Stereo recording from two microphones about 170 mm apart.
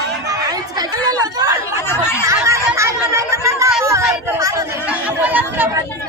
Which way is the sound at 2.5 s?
15° right (ahead or behind).